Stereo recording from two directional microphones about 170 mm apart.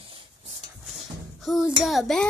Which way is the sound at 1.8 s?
Centre (ahead or behind).